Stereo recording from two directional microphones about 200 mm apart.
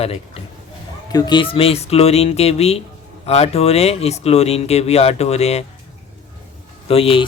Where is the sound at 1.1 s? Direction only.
20° left (ahead or behind).